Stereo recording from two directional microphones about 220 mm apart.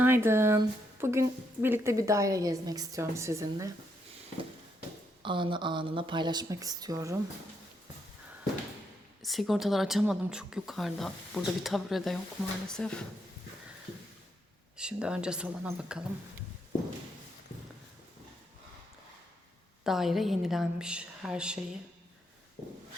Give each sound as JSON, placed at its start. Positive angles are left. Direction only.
{"t": 0.0, "sound": "speech", "side_deg": -10}
{"t": 5.2, "sound": "speech", "side_deg": -20}
{"t": 9.2, "sound": "a woman's voice", "side_deg": 0}
{"t": 14.8, "sound": "a woman's voice", "side_deg": -5}
{"t": 19.8, "sound": "a woman's voice", "side_deg": 0}